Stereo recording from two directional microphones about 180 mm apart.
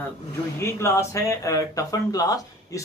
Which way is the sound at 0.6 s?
15° left (ahead or behind).